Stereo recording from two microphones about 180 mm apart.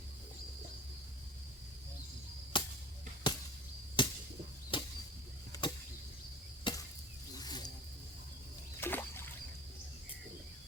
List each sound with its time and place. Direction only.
2.5 s chop: 25° left (ahead or behind)
3.3 s arrow: 25° left (ahead or behind)
4.0 s chop: 25° left (ahead or behind)
4.7 s bird flight: 25° left (ahead or behind)
5.5 s arrow: 25° left (ahead or behind)
6.7 s chop: 25° left (ahead or behind)
7.3 s a sound: 20° left (ahead or behind)
8.8 s a sound: 10° left (ahead or behind)